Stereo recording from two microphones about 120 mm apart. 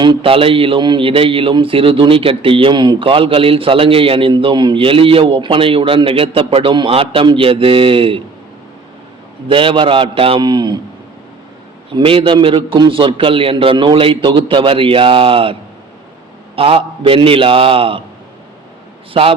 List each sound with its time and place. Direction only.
0.0 s a man's voice: 45° right (ahead or behind)
9.5 s a man's voice: 45° right (ahead or behind)
11.9 s a man's voice: 45° right (ahead or behind)
16.6 s a man's voice: 50° right (ahead or behind)